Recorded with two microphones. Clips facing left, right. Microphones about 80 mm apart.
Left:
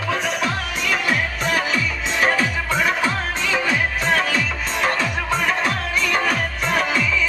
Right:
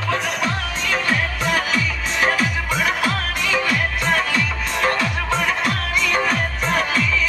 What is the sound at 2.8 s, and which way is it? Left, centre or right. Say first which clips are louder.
Music: even; left.